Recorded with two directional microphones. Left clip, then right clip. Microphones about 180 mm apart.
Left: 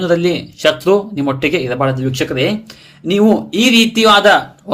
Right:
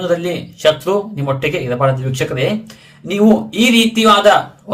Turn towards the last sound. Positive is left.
turn(degrees=45)  # may be behind; listen again after turning